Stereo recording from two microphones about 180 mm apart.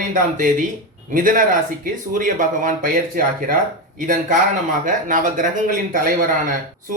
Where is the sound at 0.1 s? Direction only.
45° right (ahead or behind).